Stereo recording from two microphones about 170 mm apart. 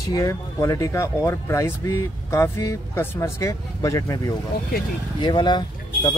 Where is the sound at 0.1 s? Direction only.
20° left (ahead or behind).